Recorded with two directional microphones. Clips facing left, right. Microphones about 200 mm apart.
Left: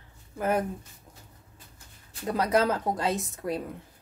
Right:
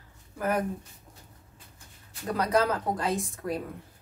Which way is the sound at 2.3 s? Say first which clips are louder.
Left 1 dB; 25° left (ahead or behind).